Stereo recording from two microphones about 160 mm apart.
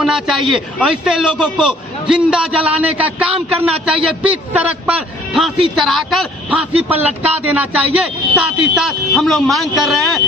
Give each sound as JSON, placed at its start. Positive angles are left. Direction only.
{"t": 0.0, "sound": "a man's voice", "side_deg": 0}